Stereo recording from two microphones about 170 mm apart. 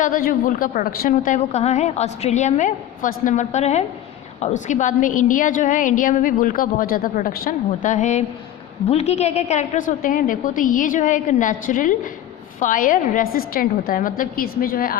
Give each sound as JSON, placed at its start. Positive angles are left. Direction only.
{"t": 0.0, "sound": "a woman's voice", "side_deg": 55}